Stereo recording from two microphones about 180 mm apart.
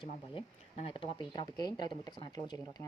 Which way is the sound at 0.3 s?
30° left (ahead or behind).